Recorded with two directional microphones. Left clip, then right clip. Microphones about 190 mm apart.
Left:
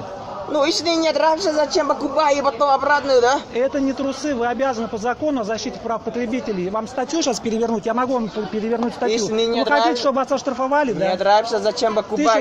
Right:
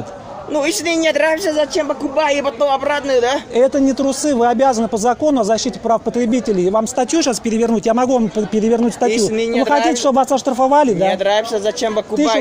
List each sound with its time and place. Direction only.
0.6 s speech: 30° right (ahead or behind)
3.5 s a man's voice: 65° right (ahead or behind)
7.2 s speech: 35° right (ahead or behind)
7.6 s a man's voice: 50° right (ahead or behind)
9.1 s speech: 25° right (ahead or behind)
9.8 s a man's voice: 60° right (ahead or behind)
11.2 s speech: 30° right (ahead or behind)